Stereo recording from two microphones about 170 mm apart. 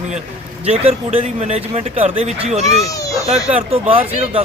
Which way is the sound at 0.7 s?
35° right (ahead or behind).